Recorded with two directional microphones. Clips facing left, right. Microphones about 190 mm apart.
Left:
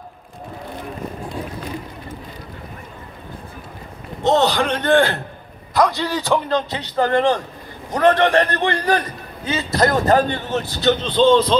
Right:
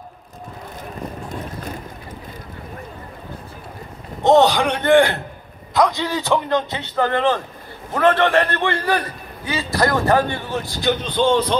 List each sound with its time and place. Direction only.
4.2 s a man's voice: 15° right (ahead or behind)
7.2 s a man's voice: 15° left (ahead or behind)
10.7 s a man's voice: 15° right (ahead or behind)